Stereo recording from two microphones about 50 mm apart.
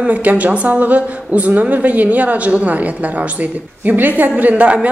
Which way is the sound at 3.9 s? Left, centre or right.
Right.